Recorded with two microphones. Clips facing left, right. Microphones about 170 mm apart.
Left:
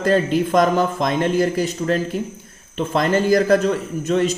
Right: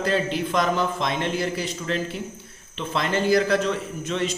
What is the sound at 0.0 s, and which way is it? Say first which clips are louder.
A man's voice: left 6 dB; 45° left (ahead or behind).